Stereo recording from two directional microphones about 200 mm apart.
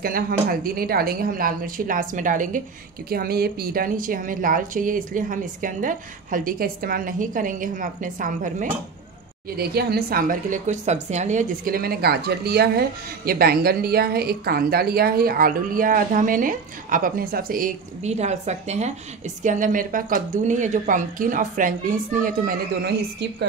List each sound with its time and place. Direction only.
0.0 s a woman's voice: 45° right (ahead or behind)
9.6 s a woman's voice: 50° right (ahead or behind)